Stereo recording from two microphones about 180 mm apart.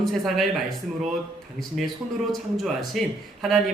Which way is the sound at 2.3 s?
Centre (ahead or behind).